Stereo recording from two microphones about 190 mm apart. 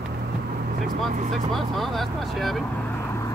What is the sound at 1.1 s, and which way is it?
Speech, 40° right (ahead or behind).